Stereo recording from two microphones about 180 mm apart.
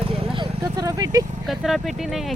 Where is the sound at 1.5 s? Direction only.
Centre (ahead or behind).